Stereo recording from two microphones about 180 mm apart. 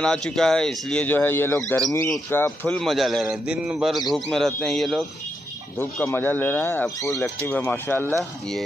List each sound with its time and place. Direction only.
0.0 s speech: 5° left (ahead or behind)
5.8 s speech: 10° left (ahead or behind)
8.1 s speech: centre (ahead or behind)